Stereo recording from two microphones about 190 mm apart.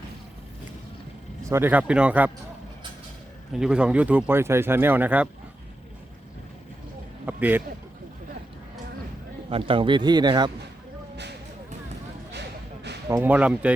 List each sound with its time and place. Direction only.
1.5 s speech: 10° right (ahead or behind)
3.5 s speech: 5° right (ahead or behind)
7.3 s speech: 10° right (ahead or behind)
9.5 s a man's voice: 30° right (ahead or behind)
12.3 s a sound: 65° right (ahead or behind)
13.1 s speech: 10° right (ahead or behind)